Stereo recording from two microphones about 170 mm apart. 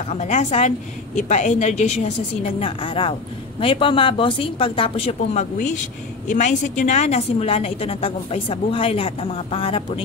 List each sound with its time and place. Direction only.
0.1 s a woman's voice: 40° left (ahead or behind)
2.6 s a woman's voice: 30° left (ahead or behind)